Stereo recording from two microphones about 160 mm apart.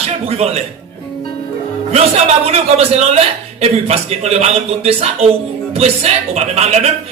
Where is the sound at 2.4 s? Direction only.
40° right (ahead or behind).